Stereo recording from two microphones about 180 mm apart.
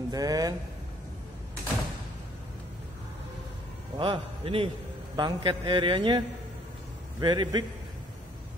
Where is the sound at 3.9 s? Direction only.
25° right (ahead or behind).